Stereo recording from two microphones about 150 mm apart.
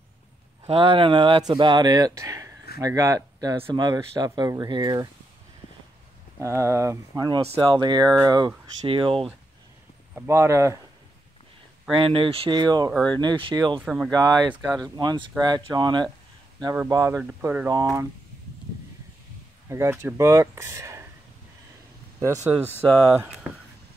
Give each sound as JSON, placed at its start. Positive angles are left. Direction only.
{"t": 0.7, "sound": "speech", "side_deg": -40}
{"t": 6.4, "sound": "speech", "side_deg": -20}
{"t": 7.4, "sound": "speech", "side_deg": -40}
{"t": 7.8, "sound": "speech", "side_deg": -30}
{"t": 10.1, "sound": "speech", "side_deg": -20}
{"t": 12.0, "sound": "speech", "side_deg": -35}
{"t": 13.7, "sound": "speech", "side_deg": -5}
{"t": 14.8, "sound": "speech", "side_deg": -30}
{"t": 16.7, "sound": "speech", "side_deg": -20}
{"t": 19.7, "sound": "speech", "side_deg": -20}
{"t": 22.2, "sound": "speech", "side_deg": -20}